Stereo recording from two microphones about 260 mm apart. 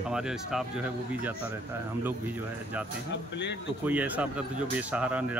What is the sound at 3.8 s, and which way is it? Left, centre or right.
Speech, centre.